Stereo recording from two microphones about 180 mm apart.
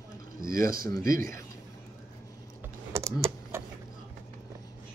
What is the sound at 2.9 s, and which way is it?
Computer keyboard, 15° right (ahead or behind).